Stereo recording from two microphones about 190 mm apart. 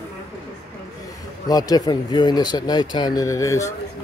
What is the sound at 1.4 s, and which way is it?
Speech, 20° left (ahead or behind).